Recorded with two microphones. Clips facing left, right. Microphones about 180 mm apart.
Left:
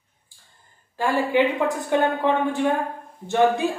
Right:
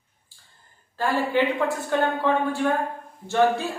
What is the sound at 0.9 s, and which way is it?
A woman's voice, 15° left (ahead or behind).